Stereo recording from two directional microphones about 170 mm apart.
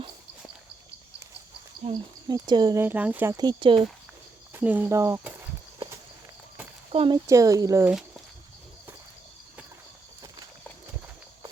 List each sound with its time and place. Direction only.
1.9 s speech: 25° right (ahead or behind)
2.8 s speech: 10° right (ahead or behind)
3.3 s speech: 25° right (ahead or behind)
4.5 s speech: 10° right (ahead or behind)
6.9 s speech: 35° right (ahead or behind)
7.3 s speech: 20° right (ahead or behind)